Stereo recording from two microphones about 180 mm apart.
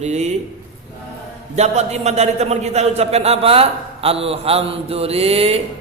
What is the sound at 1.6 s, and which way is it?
A man's voice, 35° right (ahead or behind).